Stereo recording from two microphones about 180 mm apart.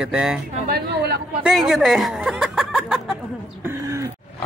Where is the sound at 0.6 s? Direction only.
60° right (ahead or behind).